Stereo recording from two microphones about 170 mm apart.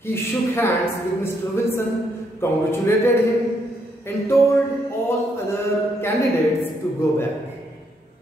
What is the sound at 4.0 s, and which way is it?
Speech, 15° left (ahead or behind).